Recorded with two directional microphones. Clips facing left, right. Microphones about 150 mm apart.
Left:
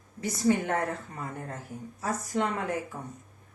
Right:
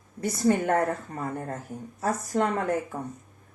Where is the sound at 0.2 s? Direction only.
50° right (ahead or behind).